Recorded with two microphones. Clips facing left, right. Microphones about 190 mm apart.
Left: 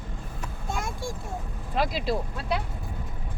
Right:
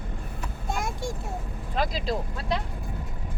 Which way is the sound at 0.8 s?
20° right (ahead or behind).